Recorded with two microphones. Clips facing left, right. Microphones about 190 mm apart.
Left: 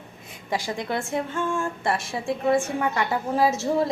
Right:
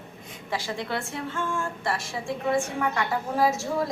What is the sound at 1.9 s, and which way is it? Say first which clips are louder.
Speech: left 4 dB; 60° left (ahead or behind).